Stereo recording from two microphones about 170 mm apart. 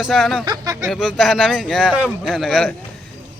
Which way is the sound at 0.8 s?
Centre (ahead or behind).